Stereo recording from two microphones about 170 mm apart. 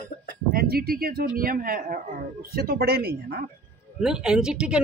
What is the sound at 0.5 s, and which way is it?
Speech, 65° right (ahead or behind).